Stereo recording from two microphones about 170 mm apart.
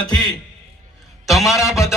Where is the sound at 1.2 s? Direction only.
Centre (ahead or behind).